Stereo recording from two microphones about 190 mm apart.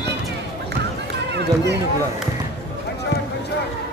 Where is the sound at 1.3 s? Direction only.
65° right (ahead or behind).